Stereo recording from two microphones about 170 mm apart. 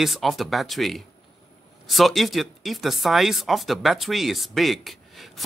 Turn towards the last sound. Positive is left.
turn(degrees=0)  # may be behind; listen again after turning